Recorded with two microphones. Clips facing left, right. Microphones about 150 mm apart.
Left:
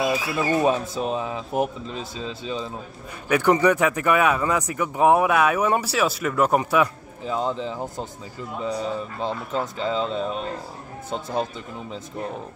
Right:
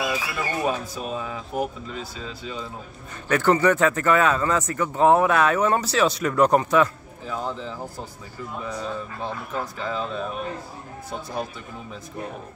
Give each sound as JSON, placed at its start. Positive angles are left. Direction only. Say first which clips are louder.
{"t": 0.0, "sound": "speech", "louder": "left 4 dB", "side_deg": 25}
{"t": 3.3, "sound": "speech", "louder": "left 1 dB", "side_deg": 15}